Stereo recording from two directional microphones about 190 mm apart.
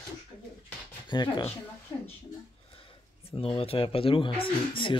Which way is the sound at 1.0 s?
25° left (ahead or behind).